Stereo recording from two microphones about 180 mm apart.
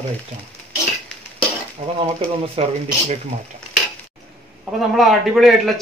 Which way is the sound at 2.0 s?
35° right (ahead or behind).